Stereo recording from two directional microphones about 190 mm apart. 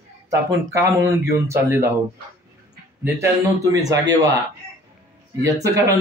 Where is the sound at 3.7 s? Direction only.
20° right (ahead or behind).